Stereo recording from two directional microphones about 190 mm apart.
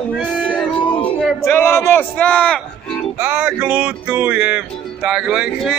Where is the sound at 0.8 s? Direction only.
25° left (ahead or behind).